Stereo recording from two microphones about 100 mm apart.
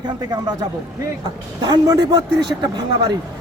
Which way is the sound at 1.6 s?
45° right (ahead or behind).